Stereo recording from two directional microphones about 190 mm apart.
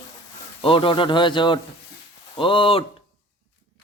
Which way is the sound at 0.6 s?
25° left (ahead or behind).